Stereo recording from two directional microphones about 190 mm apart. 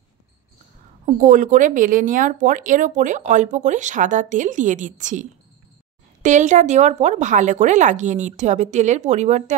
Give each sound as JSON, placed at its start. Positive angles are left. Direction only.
{"t": 1.2, "sound": "speech", "side_deg": -40}